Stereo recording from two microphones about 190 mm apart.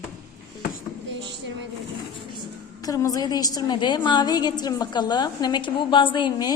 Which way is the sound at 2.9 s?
20° left (ahead or behind).